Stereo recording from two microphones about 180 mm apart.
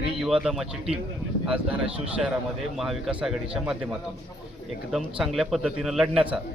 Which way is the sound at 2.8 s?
Centre (ahead or behind).